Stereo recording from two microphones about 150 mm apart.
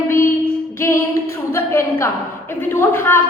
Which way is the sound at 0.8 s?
15° left (ahead or behind).